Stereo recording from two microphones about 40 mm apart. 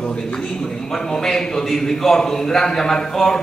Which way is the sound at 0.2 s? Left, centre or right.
Centre.